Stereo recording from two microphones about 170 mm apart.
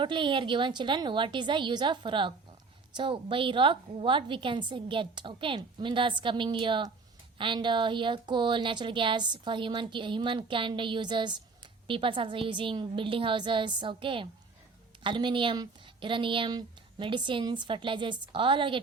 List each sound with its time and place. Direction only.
0.0 s a woman's voice: 30° right (ahead or behind)